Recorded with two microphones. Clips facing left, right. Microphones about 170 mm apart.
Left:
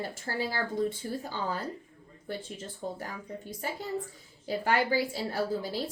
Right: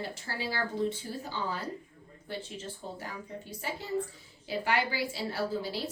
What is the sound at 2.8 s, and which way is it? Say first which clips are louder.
Speech: left 8 dB; 45° left (ahead or behind).